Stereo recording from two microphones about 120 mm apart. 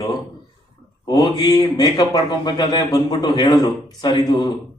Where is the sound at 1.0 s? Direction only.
35° left (ahead or behind).